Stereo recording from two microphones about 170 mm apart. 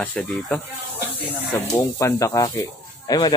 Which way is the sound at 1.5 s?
20° left (ahead or behind).